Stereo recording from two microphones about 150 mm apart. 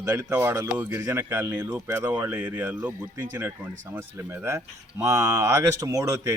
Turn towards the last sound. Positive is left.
turn(degrees=-25)  # may be behind; listen again after turning